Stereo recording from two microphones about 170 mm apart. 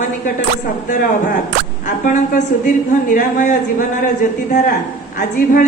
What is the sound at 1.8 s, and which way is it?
A man's voice, 50° left (ahead or behind).